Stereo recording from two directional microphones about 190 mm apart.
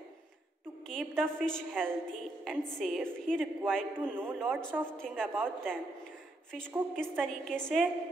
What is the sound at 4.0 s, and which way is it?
Speech, 10° right (ahead or behind).